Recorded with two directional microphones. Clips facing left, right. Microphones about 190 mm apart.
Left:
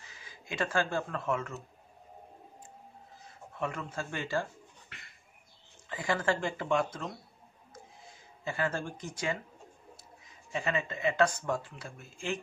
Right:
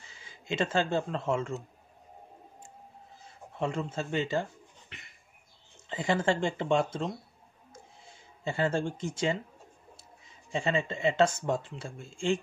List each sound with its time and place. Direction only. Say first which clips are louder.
0.1 s speech: right 7 dB; 25° right (ahead or behind)
3.5 s a sound: right 4 dB; 25° right (ahead or behind)
5.9 s speech: right 3 dB; 25° right (ahead or behind)
8.5 s speech: right 4 dB; 25° right (ahead or behind)
10.5 s speech: right 3 dB; 25° right (ahead or behind)